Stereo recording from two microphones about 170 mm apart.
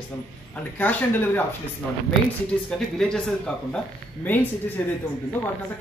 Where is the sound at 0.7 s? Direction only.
10° left (ahead or behind).